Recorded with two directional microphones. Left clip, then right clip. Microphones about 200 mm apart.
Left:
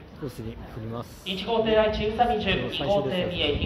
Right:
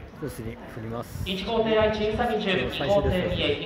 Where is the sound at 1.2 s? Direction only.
35° left (ahead or behind).